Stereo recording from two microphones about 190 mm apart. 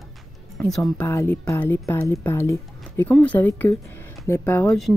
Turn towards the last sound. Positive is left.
turn(degrees=10)  # may be behind; listen again after turning